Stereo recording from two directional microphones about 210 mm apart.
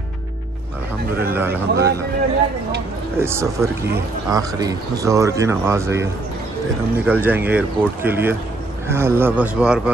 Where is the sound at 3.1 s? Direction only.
10° right (ahead or behind).